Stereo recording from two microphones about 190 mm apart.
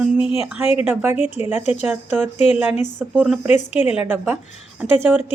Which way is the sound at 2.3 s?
35° left (ahead or behind).